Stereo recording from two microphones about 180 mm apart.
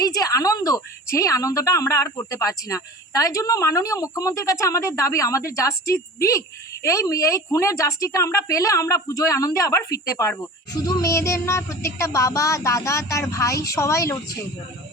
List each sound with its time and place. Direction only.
0.0 s a woman's voice: 20° left (ahead or behind)